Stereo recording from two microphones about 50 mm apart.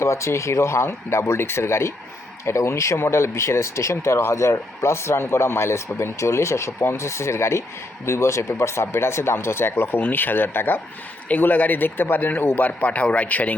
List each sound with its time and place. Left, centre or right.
0.0 s speech: left
11.3 s a man's voice: left